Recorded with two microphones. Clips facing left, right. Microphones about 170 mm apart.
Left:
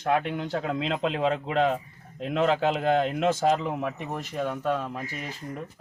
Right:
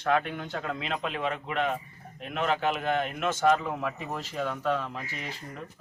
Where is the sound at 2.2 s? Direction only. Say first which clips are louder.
Left 6 dB; 90° left.